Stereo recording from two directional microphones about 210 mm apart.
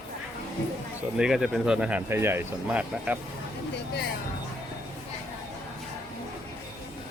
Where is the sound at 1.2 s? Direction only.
Centre (ahead or behind).